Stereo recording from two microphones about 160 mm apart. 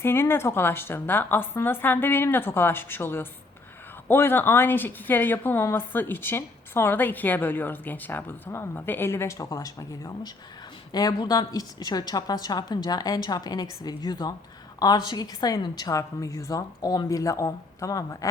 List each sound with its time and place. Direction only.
0.0 s a woman's voice: 15° left (ahead or behind)